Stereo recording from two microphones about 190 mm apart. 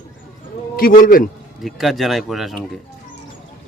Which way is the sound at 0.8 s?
50° left (ahead or behind).